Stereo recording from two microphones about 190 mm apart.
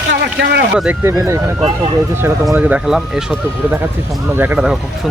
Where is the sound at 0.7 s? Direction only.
10° right (ahead or behind).